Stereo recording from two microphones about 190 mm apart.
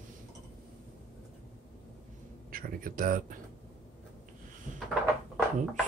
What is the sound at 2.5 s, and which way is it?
Speech, 50° right (ahead or behind).